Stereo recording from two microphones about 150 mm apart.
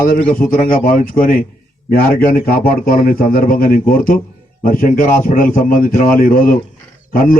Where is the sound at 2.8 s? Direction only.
70° left (ahead or behind).